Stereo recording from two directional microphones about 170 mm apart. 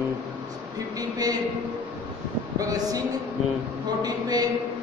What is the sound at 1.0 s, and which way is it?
Speech, 20° right (ahead or behind).